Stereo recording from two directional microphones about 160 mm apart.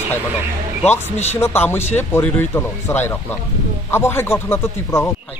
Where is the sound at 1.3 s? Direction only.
15° left (ahead or behind).